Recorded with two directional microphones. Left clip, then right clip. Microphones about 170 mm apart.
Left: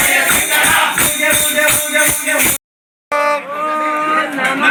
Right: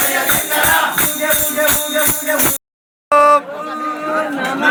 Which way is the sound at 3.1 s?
55° right (ahead or behind).